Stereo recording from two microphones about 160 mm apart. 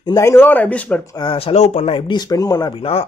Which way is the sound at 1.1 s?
30° left (ahead or behind).